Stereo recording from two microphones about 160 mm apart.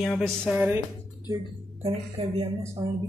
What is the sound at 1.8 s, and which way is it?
Speech, 35° right (ahead or behind).